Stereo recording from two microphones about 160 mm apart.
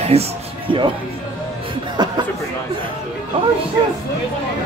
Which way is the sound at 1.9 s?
25° right (ahead or behind).